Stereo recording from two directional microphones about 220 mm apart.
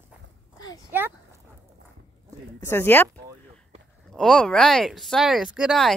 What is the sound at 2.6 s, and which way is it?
Speech, 10° left (ahead or behind).